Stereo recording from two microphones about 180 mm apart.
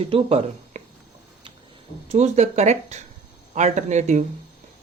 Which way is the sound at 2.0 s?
40° right (ahead or behind).